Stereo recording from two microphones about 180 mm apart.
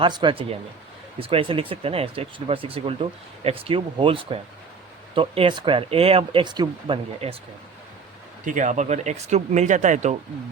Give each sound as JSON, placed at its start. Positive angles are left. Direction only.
{"t": 0.0, "sound": "speech", "side_deg": -25}
{"t": 8.4, "sound": "speech", "side_deg": -45}